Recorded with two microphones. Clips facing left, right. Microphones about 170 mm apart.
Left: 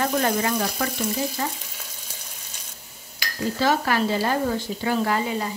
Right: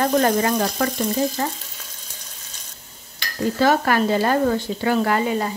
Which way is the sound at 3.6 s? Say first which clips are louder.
Right 4 dB; 50° right (ahead or behind).